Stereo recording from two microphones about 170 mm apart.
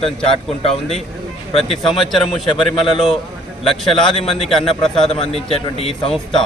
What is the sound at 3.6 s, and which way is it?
A man's voice, 30° left (ahead or behind).